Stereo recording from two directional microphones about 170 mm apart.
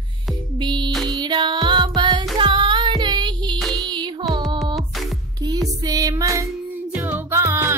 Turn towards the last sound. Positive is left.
turn(degrees=-15)  # may be behind; listen again after turning